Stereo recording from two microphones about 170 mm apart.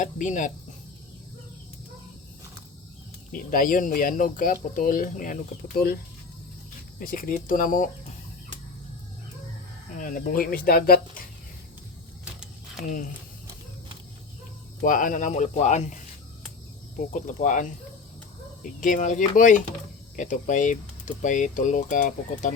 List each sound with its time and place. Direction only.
0.0 s speech: 45° left (ahead or behind)
3.3 s speech: 55° left (ahead or behind)
7.0 s speech: 55° left (ahead or behind)
10.0 s speech: 55° left (ahead or behind)
12.2 s a sound: 5° right (ahead or behind)
14.8 s speech: 50° left (ahead or behind)
17.0 s speech: 50° left (ahead or behind)
18.8 s speech: 50° left (ahead or behind)